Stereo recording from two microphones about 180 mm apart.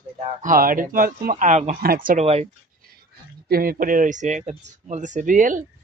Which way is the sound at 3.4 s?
55° right (ahead or behind).